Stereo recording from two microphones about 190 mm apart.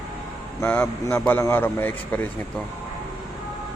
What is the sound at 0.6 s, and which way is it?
A man's voice, 10° left (ahead or behind).